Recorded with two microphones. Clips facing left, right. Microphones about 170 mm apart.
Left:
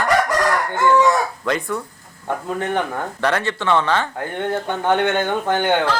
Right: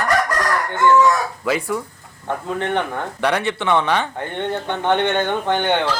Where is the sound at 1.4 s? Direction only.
5° right (ahead or behind).